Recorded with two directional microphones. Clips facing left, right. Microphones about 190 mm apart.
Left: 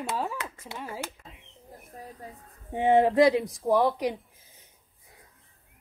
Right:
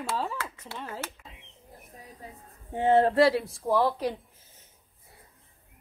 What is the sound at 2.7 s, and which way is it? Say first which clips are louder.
Speech: left 1 dB; 15° left (ahead or behind).